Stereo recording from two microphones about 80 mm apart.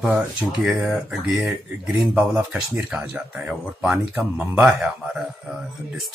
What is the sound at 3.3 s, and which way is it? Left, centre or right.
Speech, centre.